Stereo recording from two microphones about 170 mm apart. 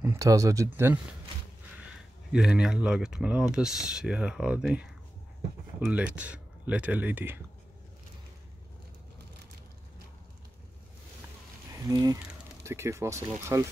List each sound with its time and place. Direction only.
0.0 s speech: 15° right (ahead or behind)
2.3 s speech: 5° right (ahead or behind)
5.9 s speech: 5° right (ahead or behind)
11.9 s speech: 20° right (ahead or behind)